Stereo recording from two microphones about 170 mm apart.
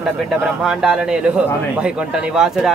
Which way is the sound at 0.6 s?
5° right (ahead or behind).